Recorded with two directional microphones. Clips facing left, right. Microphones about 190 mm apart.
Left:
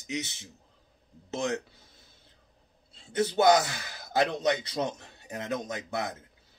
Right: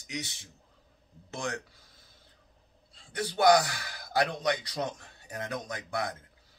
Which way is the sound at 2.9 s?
25° left (ahead or behind).